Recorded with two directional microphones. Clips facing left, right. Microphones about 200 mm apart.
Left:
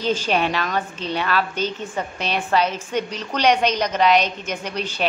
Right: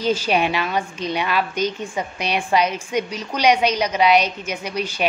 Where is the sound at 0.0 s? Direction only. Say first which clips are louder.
Right 1 dB; 10° right (ahead or behind).